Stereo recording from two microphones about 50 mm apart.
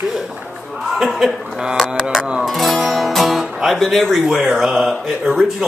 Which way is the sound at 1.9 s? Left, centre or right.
Centre.